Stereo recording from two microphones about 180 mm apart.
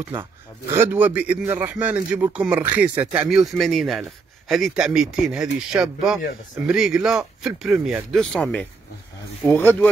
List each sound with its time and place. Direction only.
0.2 s a man's voice: 15° right (ahead or behind); by 9.8 s 10° left (ahead or behind)